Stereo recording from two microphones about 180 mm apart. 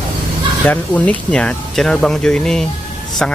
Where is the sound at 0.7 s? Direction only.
10° left (ahead or behind).